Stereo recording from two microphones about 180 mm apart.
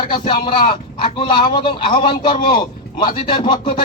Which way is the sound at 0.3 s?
30° left (ahead or behind).